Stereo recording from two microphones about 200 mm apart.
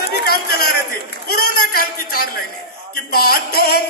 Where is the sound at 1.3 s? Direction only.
50° left (ahead or behind).